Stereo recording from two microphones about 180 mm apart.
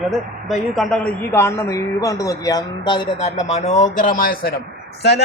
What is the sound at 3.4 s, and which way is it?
Speech, 40° left (ahead or behind).